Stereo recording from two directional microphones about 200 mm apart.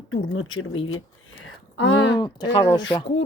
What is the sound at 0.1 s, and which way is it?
Speech, 90° left.